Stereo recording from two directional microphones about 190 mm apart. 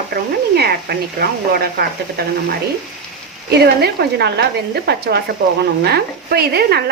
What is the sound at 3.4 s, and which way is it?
Speech, 55° right (ahead or behind).